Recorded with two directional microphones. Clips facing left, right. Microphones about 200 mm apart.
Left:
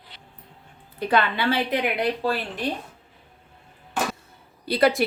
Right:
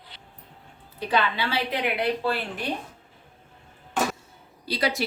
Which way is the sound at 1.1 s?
55° left (ahead or behind).